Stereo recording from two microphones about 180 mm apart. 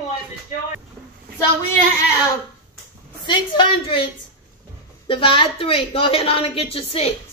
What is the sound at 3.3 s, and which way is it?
A child's voice, 25° left (ahead or behind).